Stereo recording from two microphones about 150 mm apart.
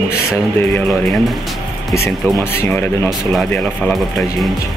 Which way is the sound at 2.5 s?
15° left (ahead or behind).